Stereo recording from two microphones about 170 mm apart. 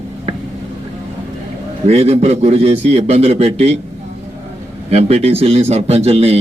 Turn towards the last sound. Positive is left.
turn(degrees=-35)  # may be behind; listen again after turning